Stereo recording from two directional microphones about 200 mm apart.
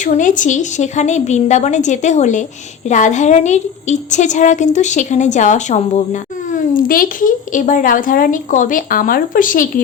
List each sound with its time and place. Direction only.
0.0 s a woman's voice: 40° left (ahead or behind)